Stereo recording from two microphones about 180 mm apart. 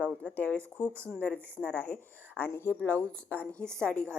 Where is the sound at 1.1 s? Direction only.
10° left (ahead or behind).